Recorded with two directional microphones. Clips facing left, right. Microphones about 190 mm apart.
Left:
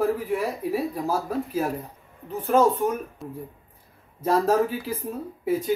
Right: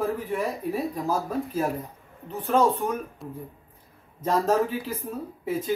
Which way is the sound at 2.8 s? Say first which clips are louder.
Left 3 dB; 10° left (ahead or behind).